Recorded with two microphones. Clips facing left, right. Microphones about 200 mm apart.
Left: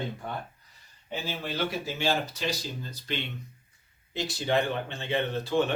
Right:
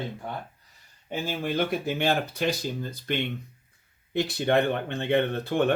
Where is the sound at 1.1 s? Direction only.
50° right (ahead or behind).